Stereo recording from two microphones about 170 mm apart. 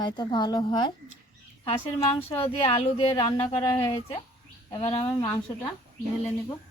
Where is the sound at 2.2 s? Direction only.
35° left (ahead or behind).